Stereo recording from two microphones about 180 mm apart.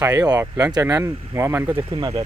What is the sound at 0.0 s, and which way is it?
Speech, 20° right (ahead or behind).